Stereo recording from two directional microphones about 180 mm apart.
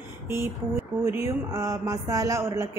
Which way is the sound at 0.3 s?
15° right (ahead or behind).